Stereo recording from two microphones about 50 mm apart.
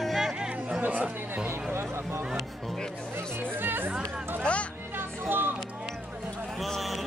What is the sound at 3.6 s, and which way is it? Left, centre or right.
Speech, right.